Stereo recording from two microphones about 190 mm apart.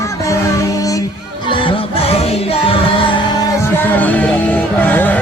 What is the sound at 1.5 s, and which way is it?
Music, 25° left (ahead or behind).